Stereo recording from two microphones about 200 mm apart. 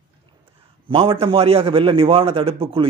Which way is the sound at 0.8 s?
25° right (ahead or behind).